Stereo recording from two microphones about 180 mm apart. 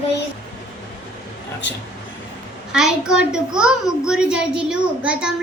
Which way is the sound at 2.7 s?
5° right (ahead or behind).